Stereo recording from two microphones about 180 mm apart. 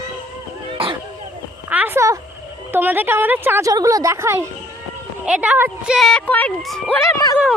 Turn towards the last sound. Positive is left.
turn(degrees=20)  # may be behind; listen again after turning